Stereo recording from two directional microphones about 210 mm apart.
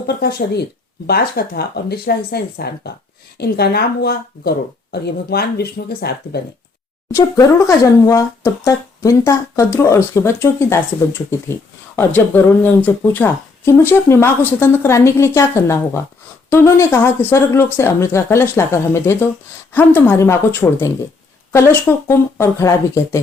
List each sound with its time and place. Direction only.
0.1 s speech: 50° left (ahead or behind)
7.1 s speech: 15° left (ahead or behind)